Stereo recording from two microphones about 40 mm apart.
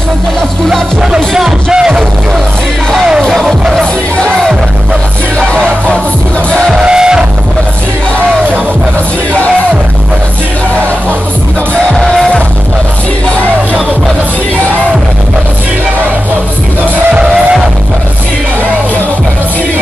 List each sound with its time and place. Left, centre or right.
1.1 s music: centre
3.2 s music: centre
5.4 s music: centre
6.7 s music: centre
17.1 s music: right